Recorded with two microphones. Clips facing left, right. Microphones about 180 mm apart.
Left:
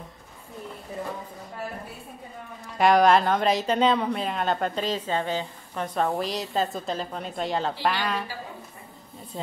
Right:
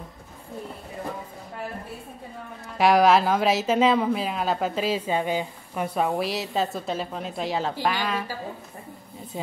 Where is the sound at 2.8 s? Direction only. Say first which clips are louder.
Even; 5° right (ahead or behind).